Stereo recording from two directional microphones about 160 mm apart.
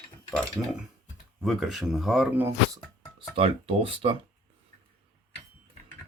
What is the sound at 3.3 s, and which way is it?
Speech, 35° right (ahead or behind).